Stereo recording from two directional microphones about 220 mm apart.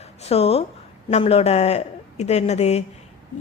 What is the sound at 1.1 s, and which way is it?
A woman's voice, 25° left (ahead or behind).